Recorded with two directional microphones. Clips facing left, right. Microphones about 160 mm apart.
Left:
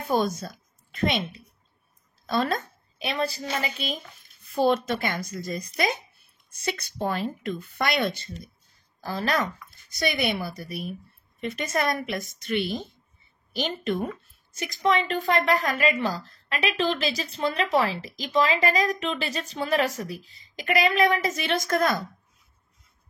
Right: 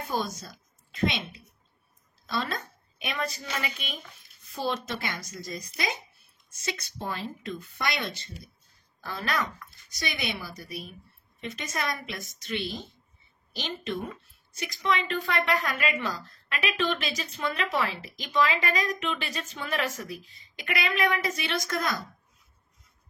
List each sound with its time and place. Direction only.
0.0 s a woman's voice: 55° left (ahead or behind)
2.2 s speech: 50° left (ahead or behind)
3.0 s a woman's voice: 30° left (ahead or behind)
4.4 s a woman's voice: 55° left (ahead or behind)
9.0 s a woman's voice: 35° left (ahead or behind)
9.8 s a woman's voice: 50° left (ahead or behind)